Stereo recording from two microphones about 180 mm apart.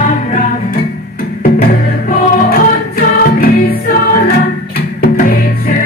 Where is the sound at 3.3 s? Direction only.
55° left (ahead or behind).